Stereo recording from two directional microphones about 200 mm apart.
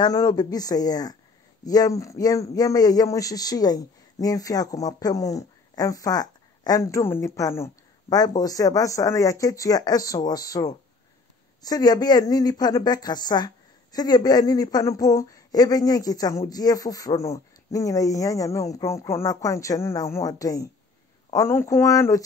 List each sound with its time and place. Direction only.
0.0 s a woman's voice: 20° left (ahead or behind)